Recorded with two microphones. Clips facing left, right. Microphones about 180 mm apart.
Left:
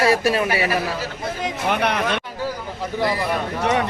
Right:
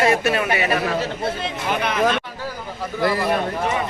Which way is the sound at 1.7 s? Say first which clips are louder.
Left 1 dB; 65° left (ahead or behind).